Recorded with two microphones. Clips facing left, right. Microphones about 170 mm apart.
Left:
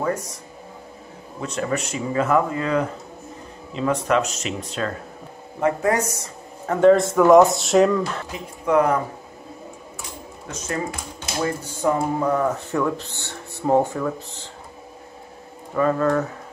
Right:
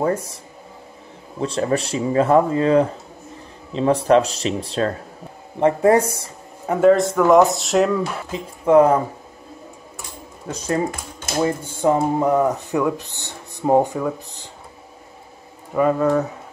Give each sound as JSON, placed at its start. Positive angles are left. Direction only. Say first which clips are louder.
{"t": 0.0, "sound": "speech", "louder": "right 4 dB", "side_deg": -30}
{"t": 1.4, "sound": "speech", "louder": "right 5 dB", "side_deg": -30}
{"t": 6.7, "sound": "speech", "louder": "even", "side_deg": -5}
{"t": 8.3, "sound": "speech", "louder": "right 8 dB", "side_deg": -25}
{"t": 10.5, "sound": "speech", "louder": "right 6 dB", "side_deg": -35}
{"t": 15.7, "sound": "speech", "louder": "right 2 dB", "side_deg": -15}